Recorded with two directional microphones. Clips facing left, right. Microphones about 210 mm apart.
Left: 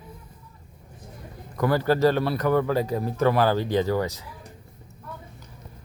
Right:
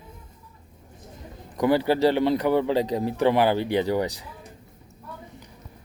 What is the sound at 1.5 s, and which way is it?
Speech, 15° right (ahead or behind).